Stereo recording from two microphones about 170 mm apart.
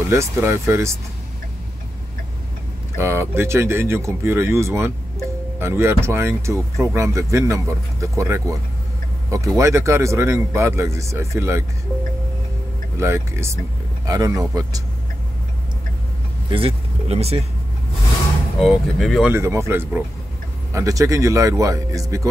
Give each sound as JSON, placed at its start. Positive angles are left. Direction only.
{"t": 0.1, "sound": "speech", "side_deg": -15}
{"t": 3.0, "sound": "speech", "side_deg": -15}
{"t": 13.0, "sound": "speech", "side_deg": -15}
{"t": 16.4, "sound": "speech", "side_deg": -35}
{"t": 18.6, "sound": "speech", "side_deg": 0}
{"t": 19.3, "sound": "speech", "side_deg": -15}